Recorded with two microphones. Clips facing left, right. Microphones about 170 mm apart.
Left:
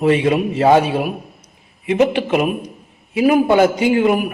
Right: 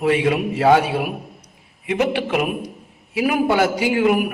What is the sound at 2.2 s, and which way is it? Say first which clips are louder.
Speech: left 4 dB; 20° left (ahead or behind).